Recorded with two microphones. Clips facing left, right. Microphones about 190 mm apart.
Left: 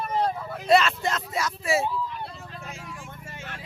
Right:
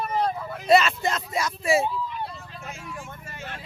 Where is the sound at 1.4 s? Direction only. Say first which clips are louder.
Right 3 dB; 15° right (ahead or behind).